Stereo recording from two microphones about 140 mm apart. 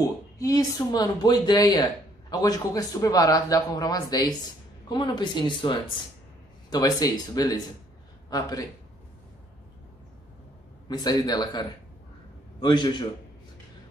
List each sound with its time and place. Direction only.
0.0 s speech: 25° left (ahead or behind)
10.9 s a man's voice: 30° left (ahead or behind)